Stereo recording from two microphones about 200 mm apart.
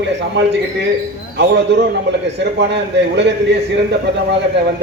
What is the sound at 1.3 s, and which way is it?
A man's voice, 60° right (ahead or behind).